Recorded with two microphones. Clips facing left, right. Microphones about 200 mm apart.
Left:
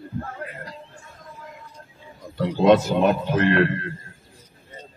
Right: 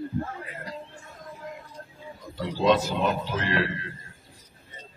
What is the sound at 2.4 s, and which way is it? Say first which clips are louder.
A man's voice: left 6 dB; 55° left (ahead or behind).